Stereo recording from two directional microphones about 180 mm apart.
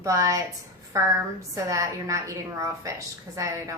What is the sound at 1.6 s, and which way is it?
A woman's voice, 15° right (ahead or behind).